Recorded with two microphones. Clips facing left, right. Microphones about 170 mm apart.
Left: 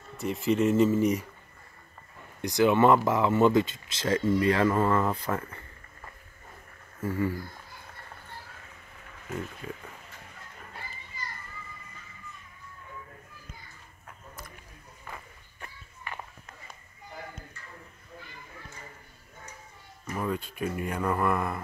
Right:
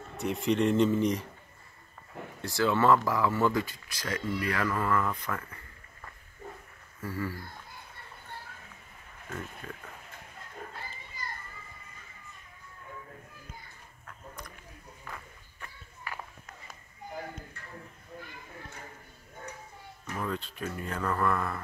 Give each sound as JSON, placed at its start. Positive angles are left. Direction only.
{"t": 0.2, "sound": "speech", "side_deg": 0}
{"t": 2.4, "sound": "speech", "side_deg": 20}
{"t": 7.0, "sound": "speech", "side_deg": 20}
{"t": 14.0, "sound": "a sound", "side_deg": 5}
{"t": 20.2, "sound": "speech", "side_deg": 10}